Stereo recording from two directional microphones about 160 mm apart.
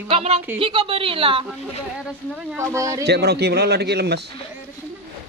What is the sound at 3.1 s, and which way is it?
A man's voice, 90° right.